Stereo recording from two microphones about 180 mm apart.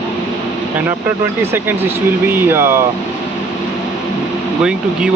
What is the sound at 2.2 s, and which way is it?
Speech, 10° right (ahead or behind).